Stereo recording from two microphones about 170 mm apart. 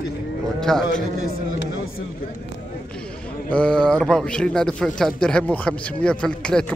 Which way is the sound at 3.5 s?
5° left (ahead or behind).